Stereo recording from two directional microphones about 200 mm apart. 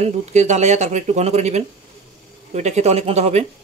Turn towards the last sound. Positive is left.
turn(degrees=-30)  # may be behind; listen again after turning